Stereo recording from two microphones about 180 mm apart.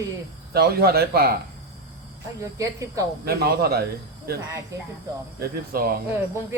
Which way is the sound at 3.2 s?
60° right (ahead or behind).